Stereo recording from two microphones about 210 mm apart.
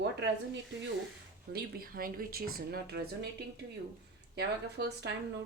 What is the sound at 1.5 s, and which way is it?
Speech, 45° right (ahead or behind).